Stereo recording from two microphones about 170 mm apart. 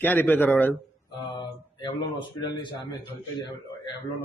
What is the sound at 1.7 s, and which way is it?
Speech, 25° left (ahead or behind).